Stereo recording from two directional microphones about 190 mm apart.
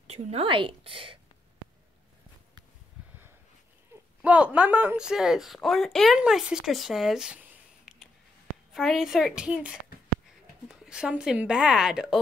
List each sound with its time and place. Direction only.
0.0 s a woman's voice: 35° right (ahead or behind)
4.2 s speech: 5° right (ahead or behind)
7.9 s a sound: 5° right (ahead or behind)
8.7 s speech: centre (ahead or behind)